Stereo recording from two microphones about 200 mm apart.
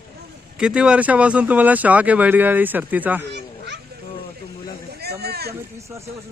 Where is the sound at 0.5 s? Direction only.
5° right (ahead or behind).